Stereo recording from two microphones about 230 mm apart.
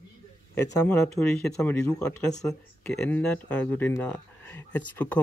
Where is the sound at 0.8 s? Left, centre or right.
Centre.